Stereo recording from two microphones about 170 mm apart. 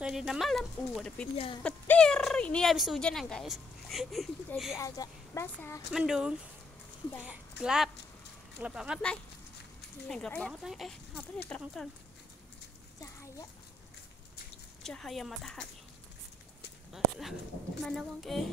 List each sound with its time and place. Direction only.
0.0 s speech: 5° right (ahead or behind)
4.7 s speech: 20° left (ahead or behind)
5.9 s a woman's voice: 5° right (ahead or behind)
13.0 s a sound: 20° left (ahead or behind)
14.8 s speech: centre (ahead or behind)
16.9 s speech: centre (ahead or behind)